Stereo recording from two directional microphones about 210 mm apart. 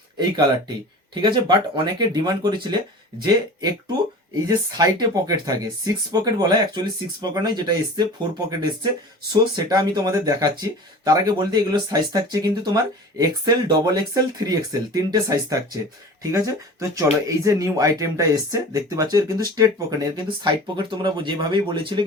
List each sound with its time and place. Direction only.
1.1 s speech: 20° right (ahead or behind)
4.4 s speech: 20° right (ahead or behind)